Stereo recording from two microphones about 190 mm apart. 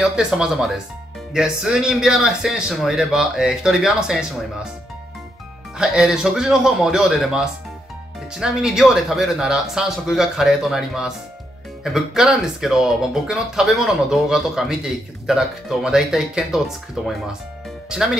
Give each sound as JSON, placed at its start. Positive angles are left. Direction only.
{"t": 0.0, "sound": "speech", "side_deg": -5}
{"t": 5.8, "sound": "speech", "side_deg": -5}